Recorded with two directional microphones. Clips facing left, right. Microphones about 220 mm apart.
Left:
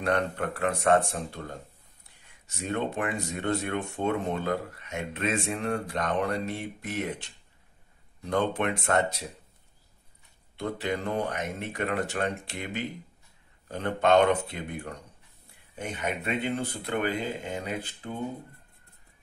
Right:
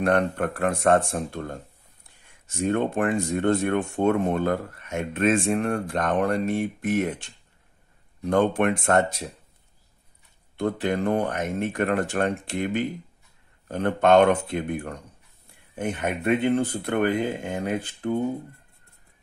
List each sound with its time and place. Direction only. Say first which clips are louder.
0.0 s speech: right 5 dB; 50° right (ahead or behind)
2.7 s speech: right 6 dB; 50° right (ahead or behind)
8.3 s speech: right 6 dB; 50° right (ahead or behind)
10.6 s speech: right 6 dB; 50° right (ahead or behind)